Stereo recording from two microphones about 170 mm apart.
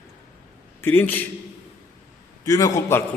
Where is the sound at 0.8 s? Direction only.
10° left (ahead or behind).